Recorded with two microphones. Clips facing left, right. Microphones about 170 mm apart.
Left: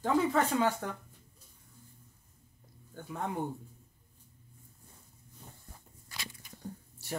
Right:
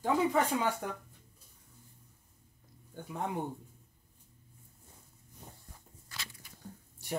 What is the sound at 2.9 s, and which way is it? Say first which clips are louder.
Speech: even; 15° right (ahead or behind).